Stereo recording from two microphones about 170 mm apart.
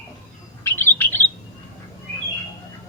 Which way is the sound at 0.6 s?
15° left (ahead or behind).